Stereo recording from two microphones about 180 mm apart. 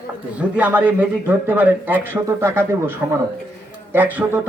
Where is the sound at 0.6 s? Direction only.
10° right (ahead or behind).